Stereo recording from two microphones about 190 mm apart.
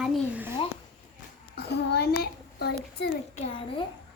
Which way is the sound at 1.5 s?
60° left (ahead or behind).